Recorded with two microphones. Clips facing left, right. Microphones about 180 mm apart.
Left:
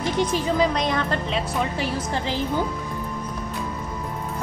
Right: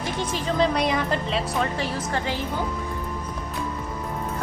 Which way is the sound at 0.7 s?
5° right (ahead or behind).